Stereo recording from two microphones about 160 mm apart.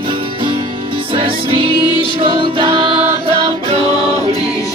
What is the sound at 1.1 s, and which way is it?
Music, 35° right (ahead or behind).